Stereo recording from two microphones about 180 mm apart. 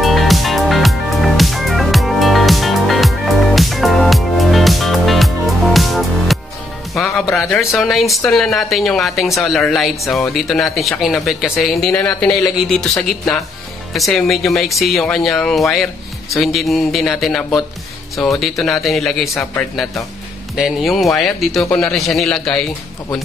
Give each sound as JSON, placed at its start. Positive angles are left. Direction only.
{"t": 0.0, "sound": "music", "side_deg": 0}
{"t": 7.0, "sound": "speech", "side_deg": 0}
{"t": 20.5, "sound": "speech", "side_deg": 0}